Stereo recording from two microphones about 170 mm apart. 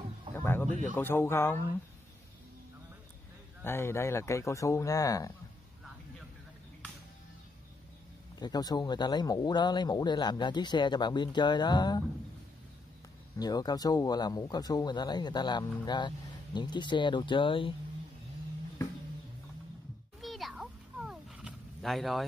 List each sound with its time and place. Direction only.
0.4 s a sound: 10° left (ahead or behind)
0.7 s speech: 45° right (ahead or behind)
0.9 s speech: 15° left (ahead or behind)
3.6 s speech: 15° left (ahead or behind)
8.4 s speech: 25° left (ahead or behind)
13.4 s speech: 25° left (ahead or behind)
20.2 s a sound: centre (ahead or behind)